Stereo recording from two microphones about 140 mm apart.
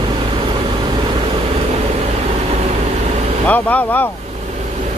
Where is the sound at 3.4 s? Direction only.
10° left (ahead or behind).